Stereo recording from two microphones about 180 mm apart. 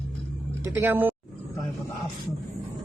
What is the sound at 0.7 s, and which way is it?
Speech, 10° right (ahead or behind).